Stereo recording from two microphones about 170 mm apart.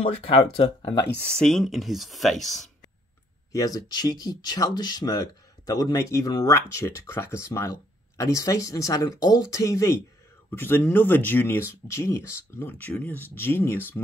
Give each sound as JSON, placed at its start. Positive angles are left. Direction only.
{"t": 0.3, "sound": "speech", "side_deg": 25}
{"t": 1.3, "sound": "speech", "side_deg": 5}
{"t": 3.5, "sound": "speech", "side_deg": 20}